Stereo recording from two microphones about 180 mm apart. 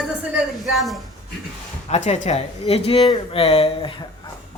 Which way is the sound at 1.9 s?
40° left (ahead or behind).